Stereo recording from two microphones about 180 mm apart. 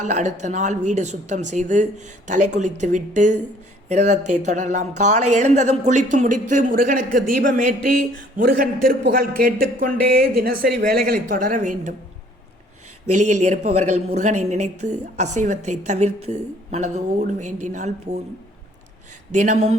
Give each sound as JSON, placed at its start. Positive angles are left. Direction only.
{"t": 0.0, "sound": "a woman's voice", "side_deg": -40}
{"t": 13.1, "sound": "a woman's voice", "side_deg": -40}
{"t": 19.3, "sound": "a woman's voice", "side_deg": -40}